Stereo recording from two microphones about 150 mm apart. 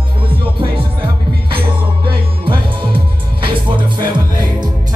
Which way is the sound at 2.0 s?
35° right (ahead or behind).